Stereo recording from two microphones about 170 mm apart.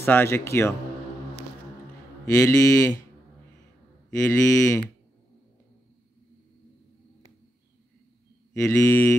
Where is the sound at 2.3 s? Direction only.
15° left (ahead or behind).